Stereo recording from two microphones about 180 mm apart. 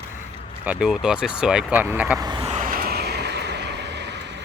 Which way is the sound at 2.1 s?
20° right (ahead or behind).